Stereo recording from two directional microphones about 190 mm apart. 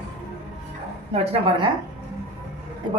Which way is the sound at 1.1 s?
30° right (ahead or behind).